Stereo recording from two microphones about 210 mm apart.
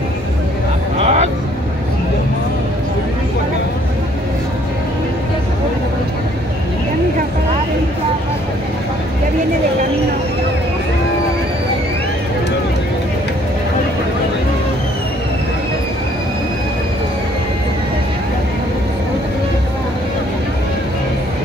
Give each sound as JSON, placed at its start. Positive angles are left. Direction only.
{"t": 0.9, "sound": "vehicle", "side_deg": -30}